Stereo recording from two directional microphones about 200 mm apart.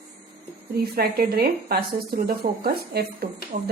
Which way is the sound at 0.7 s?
50° right (ahead or behind).